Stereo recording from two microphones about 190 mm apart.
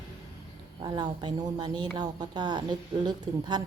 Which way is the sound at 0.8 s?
20° right (ahead or behind).